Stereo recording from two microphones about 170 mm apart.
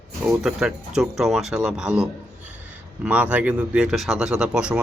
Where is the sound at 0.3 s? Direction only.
5° right (ahead or behind).